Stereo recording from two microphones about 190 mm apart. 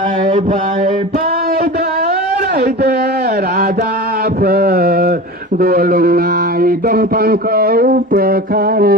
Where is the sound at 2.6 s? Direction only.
55° right (ahead or behind).